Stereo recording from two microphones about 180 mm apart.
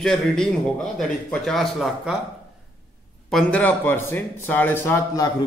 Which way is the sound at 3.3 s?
10° left (ahead or behind).